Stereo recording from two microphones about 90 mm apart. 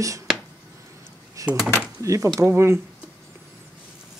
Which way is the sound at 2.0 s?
35° right (ahead or behind).